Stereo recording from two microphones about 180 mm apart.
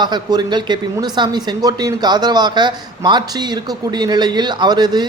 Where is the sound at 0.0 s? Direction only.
25° right (ahead or behind).